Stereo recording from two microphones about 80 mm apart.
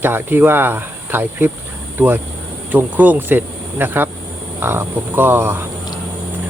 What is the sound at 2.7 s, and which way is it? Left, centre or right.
Speech, right.